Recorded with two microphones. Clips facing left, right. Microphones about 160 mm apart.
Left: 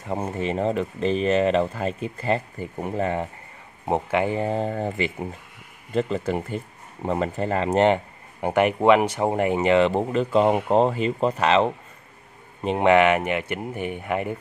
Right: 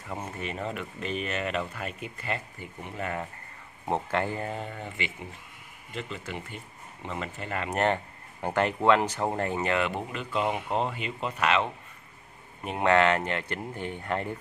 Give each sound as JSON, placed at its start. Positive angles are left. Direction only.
{"t": 0.4, "sound": "speech", "side_deg": 30}
{"t": 4.5, "sound": "speech", "side_deg": 40}
{"t": 7.8, "sound": "speech", "side_deg": 20}
{"t": 12.6, "sound": "speech", "side_deg": 20}